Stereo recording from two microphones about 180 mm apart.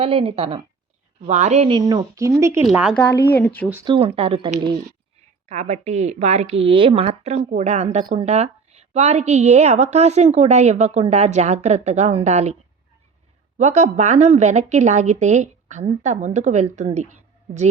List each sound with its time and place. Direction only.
0.0 s a woman's voice: 35° right (ahead or behind)
1.8 s a woman's voice: 20° right (ahead or behind)
3.2 s speech: 10° left (ahead or behind)
3.8 s a woman's voice: 30° right (ahead or behind)
5.5 s a woman's voice: 40° right (ahead or behind)
13.6 s a woman's voice: 40° right (ahead or behind)